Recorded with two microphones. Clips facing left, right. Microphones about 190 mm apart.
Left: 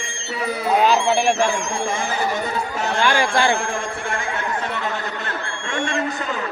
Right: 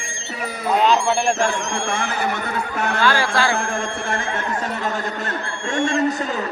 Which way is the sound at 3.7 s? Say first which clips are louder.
Right 1 dB; 45° right (ahead or behind).